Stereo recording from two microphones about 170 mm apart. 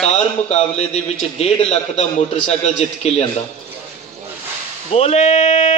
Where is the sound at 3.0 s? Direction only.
35° left (ahead or behind).